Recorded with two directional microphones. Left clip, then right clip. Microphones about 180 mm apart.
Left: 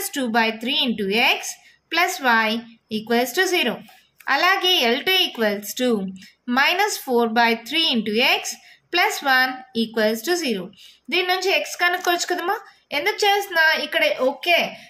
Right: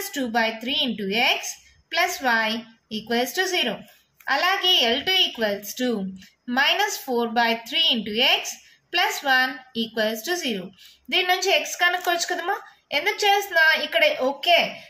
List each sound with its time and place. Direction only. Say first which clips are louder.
0.1 s a woman's voice: left 3 dB; 35° left (ahead or behind)